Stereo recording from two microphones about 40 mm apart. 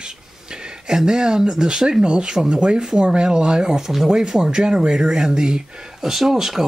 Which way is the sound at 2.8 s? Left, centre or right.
Centre.